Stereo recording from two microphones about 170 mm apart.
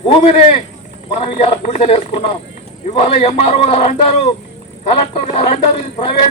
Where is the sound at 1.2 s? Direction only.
35° left (ahead or behind).